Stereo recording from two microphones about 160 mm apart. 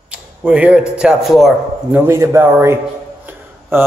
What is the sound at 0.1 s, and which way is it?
Speech, 10° right (ahead or behind).